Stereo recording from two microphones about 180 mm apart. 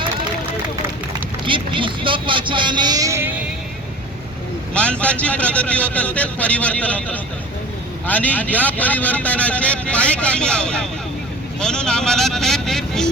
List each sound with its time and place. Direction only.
1.5 s speech: 30° right (ahead or behind); by 3.4 s 10° right (ahead or behind)
4.7 s speech: 5° left (ahead or behind)